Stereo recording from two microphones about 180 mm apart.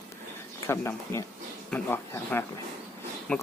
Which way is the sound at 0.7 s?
15° left (ahead or behind).